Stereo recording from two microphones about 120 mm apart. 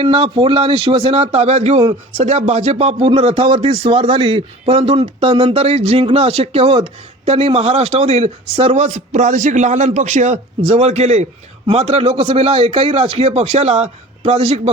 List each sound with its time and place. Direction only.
0.0 s a man's voice: 45° right (ahead or behind); by 11.3 s 70° right (ahead or behind)
11.7 s speech: 55° right (ahead or behind)